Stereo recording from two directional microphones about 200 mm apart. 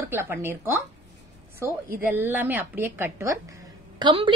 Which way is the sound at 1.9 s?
10° right (ahead or behind).